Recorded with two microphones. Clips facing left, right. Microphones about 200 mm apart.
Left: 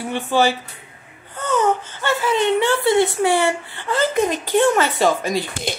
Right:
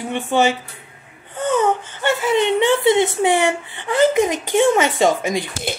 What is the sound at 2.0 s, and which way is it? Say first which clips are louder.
Speech: right 1 dB; 20° right (ahead or behind).